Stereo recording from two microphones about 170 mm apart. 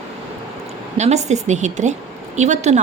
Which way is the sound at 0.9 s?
40° right (ahead or behind).